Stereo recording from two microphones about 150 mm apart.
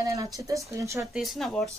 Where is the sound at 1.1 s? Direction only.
Centre (ahead or behind).